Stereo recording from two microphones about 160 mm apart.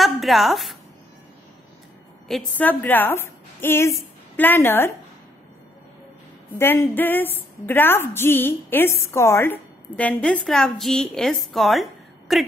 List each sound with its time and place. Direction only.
0.0 s a sound: centre (ahead or behind)
2.2 s a woman's voice: 5° left (ahead or behind)
6.5 s a woman's voice: 15° left (ahead or behind)